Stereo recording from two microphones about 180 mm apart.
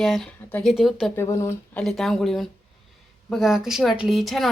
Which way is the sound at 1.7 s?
Centre (ahead or behind).